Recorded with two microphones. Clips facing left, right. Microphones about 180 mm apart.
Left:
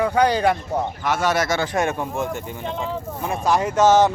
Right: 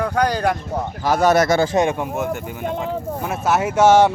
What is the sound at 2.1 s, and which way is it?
Speech, 5° right (ahead or behind).